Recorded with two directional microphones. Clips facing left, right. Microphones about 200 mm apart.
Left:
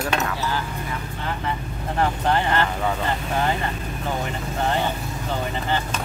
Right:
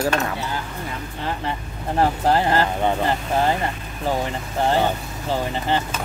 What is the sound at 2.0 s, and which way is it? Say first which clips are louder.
Speech: right 3 dB; 35° right (ahead or behind).